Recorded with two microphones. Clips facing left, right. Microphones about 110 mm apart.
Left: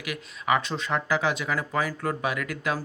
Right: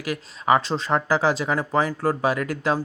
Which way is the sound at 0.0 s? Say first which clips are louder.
Right 6 dB; 35° right (ahead or behind).